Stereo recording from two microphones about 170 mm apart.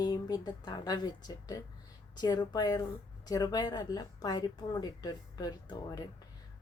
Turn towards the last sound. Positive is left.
turn(degrees=25)  # may be behind; listen again after turning